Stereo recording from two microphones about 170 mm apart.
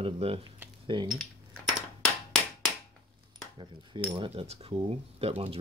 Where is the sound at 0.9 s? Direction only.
30° right (ahead or behind).